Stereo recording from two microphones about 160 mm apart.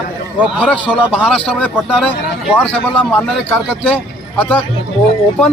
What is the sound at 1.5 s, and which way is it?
Speech, 10° left (ahead or behind).